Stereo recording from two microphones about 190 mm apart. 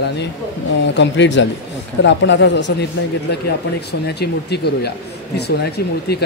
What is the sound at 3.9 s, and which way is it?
A man's voice, 60° left (ahead or behind).